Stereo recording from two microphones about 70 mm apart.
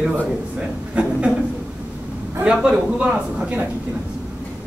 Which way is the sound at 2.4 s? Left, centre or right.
Centre.